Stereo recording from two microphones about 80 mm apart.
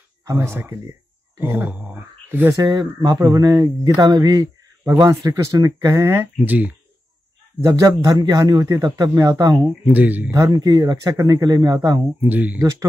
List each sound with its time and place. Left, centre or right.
0.4 s speech: right
2.5 s speech: right
3.2 s speech: right
6.4 s speech: right
7.6 s speech: right
9.9 s speech: centre
10.3 s speech: right
12.2 s speech: centre